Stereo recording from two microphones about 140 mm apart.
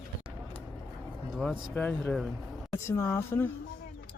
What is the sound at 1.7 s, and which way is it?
Speech, 5° left (ahead or behind).